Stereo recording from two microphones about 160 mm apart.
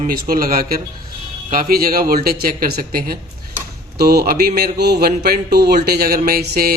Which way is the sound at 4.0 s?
80° right.